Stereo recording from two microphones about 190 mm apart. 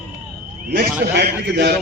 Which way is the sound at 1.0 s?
60° right (ahead or behind).